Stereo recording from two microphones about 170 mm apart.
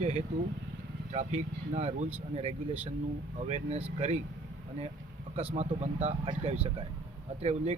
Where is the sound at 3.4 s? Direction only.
40° right (ahead or behind).